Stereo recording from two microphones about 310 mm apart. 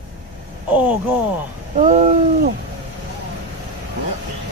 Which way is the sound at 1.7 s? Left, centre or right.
Right.